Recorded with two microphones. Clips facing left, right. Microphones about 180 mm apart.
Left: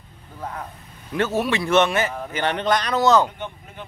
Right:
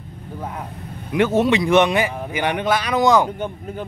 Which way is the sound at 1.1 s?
15° right (ahead or behind).